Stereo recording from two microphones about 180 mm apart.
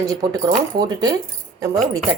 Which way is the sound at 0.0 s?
20° right (ahead or behind).